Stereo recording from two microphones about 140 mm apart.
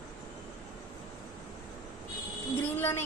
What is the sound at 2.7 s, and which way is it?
Speech, 15° left (ahead or behind).